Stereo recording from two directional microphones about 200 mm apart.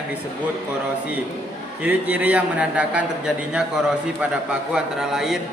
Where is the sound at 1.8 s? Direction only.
5° right (ahead or behind).